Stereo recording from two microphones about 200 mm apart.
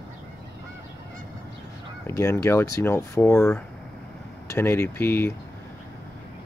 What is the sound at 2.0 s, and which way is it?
Speech, 15° left (ahead or behind).